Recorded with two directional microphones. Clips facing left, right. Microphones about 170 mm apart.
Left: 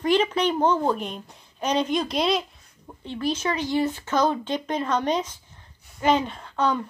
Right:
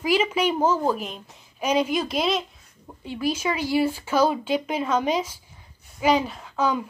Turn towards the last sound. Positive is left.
turn(degrees=-5)  # may be behind; listen again after turning